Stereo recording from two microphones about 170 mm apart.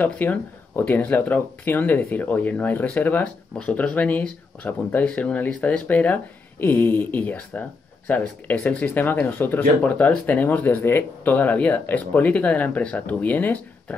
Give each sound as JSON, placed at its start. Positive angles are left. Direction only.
{"t": 0.0, "sound": "speech", "side_deg": 10}